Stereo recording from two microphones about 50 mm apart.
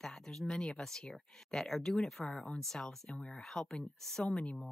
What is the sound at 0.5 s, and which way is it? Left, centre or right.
Speech, centre.